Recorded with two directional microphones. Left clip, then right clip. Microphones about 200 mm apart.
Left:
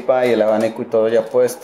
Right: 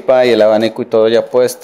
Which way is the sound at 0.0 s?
60° right (ahead or behind).